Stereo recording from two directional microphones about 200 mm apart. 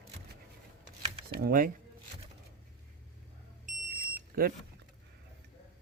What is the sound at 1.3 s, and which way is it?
Speech, 45° right (ahead or behind).